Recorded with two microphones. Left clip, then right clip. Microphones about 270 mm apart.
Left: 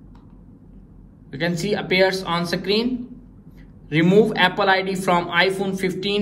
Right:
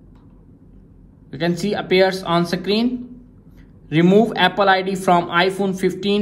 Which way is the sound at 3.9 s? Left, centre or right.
Right.